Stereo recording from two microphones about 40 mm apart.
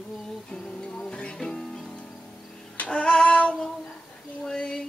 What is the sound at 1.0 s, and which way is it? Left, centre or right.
Music, left.